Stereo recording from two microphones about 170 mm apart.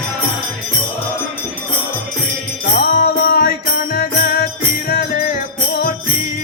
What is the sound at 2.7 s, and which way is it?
Music, 60° left (ahead or behind).